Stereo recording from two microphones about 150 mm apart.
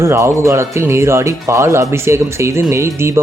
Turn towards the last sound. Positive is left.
turn(degrees=-20)  # may be behind; listen again after turning